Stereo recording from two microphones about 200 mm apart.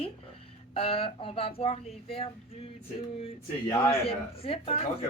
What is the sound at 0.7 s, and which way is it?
Speech, 30° left (ahead or behind).